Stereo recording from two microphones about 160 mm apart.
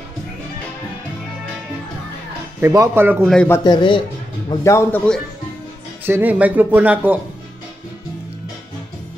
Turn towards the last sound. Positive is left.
turn(degrees=-10)  # may be behind; listen again after turning